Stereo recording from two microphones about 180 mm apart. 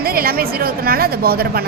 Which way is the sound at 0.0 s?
55° right (ahead or behind).